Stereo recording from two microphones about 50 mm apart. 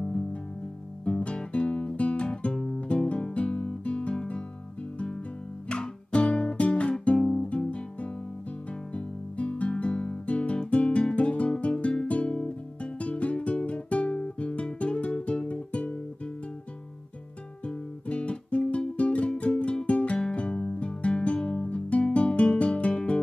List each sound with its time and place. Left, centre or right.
1.0 s guitar: left
4.9 s music: left
8.9 s guitar: left
17.6 s guitar: left
20.2 s music: centre
21.6 s music: left
22.0 s guitar: left